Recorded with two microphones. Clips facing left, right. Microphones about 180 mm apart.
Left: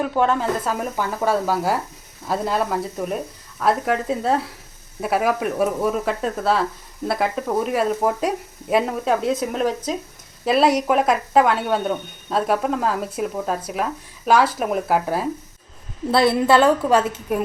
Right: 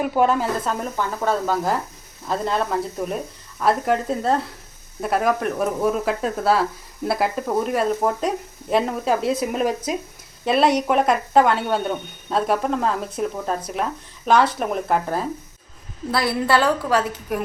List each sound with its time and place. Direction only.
0.0 s speech: 10° right (ahead or behind)
0.6 s speech: 5° left (ahead or behind)
16.1 s a woman's voice: 25° left (ahead or behind)